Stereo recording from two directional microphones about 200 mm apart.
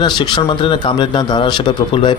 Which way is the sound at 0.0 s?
25° left (ahead or behind).